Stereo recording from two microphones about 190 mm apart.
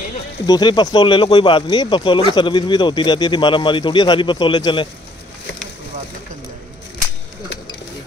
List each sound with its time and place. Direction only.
0.5 s speech: 25° left (ahead or behind)